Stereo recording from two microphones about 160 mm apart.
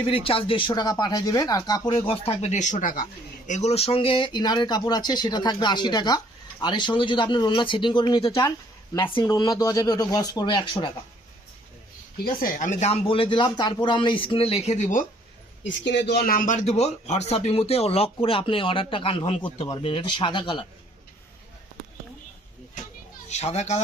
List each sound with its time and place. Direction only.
0.0 s speech: 35° left (ahead or behind)
9.2 s speech: 20° left (ahead or behind)
12.2 s speech: 60° left (ahead or behind)
15.9 s speech: 90° left; by 20.7 s 30° left (ahead or behind)
23.3 s speech: 45° left (ahead or behind)